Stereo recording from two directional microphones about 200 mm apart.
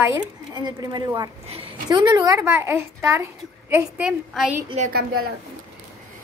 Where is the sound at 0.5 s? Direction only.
20° right (ahead or behind).